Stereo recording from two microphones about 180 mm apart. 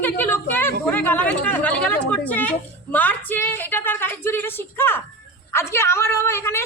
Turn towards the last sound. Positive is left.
turn(degrees=15)  # may be behind; listen again after turning